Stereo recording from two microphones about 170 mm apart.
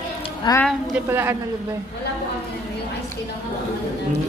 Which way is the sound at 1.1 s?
15° right (ahead or behind).